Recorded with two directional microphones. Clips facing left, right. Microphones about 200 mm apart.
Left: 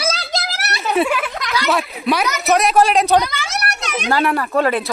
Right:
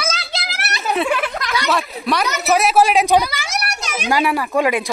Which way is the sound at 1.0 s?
Centre (ahead or behind).